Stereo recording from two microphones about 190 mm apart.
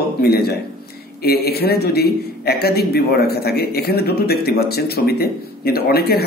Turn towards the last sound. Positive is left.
turn(degrees=55)  # may be behind; listen again after turning